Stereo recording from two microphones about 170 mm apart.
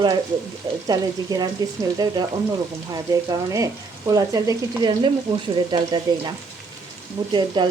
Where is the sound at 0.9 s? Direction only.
20° right (ahead or behind).